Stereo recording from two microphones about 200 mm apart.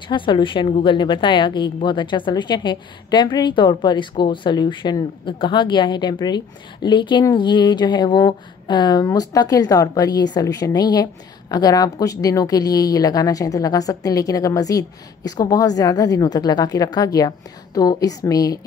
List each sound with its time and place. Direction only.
0.1 s a woman's voice: 25° left (ahead or behind)